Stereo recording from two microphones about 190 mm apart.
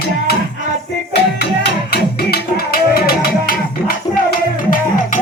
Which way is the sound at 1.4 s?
55° left (ahead or behind).